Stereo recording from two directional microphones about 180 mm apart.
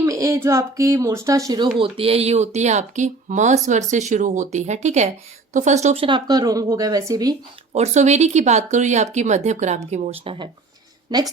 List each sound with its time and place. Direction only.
0.0 s speech: 15° right (ahead or behind)
1.8 s speech: 30° right (ahead or behind)
7.7 s speech: 40° right (ahead or behind)